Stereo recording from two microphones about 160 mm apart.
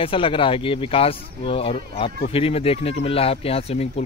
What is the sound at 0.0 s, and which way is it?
Speech, 35° left (ahead or behind).